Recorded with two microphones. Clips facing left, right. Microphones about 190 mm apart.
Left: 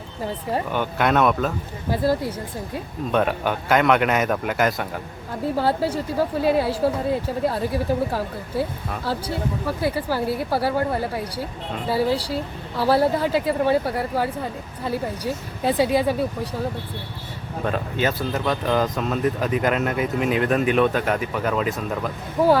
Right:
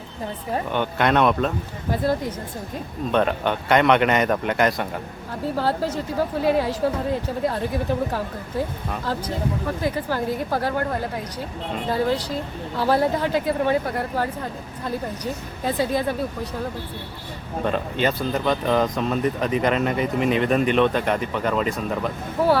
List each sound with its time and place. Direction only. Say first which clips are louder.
0.5 s speech: right 1 dB; 5° left (ahead or behind)
17.7 s speech: right 1 dB; 5° left (ahead or behind)